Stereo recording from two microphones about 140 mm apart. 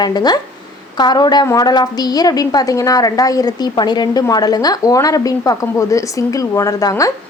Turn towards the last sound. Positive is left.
turn(degrees=25)  # may be behind; listen again after turning